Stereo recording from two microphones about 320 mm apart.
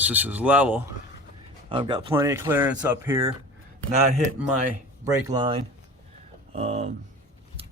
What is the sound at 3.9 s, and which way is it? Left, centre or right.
A man's voice, right.